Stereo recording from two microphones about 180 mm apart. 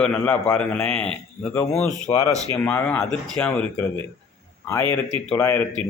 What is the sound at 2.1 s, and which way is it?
Speech, 20° left (ahead or behind).